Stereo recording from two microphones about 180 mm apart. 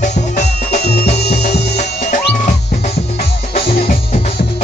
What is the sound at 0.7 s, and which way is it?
Music, 60° left (ahead or behind).